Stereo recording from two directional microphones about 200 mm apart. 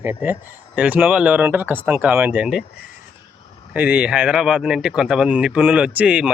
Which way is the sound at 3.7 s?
5° right (ahead or behind).